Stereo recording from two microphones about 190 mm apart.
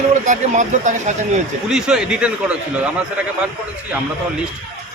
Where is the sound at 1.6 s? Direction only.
5° right (ahead or behind).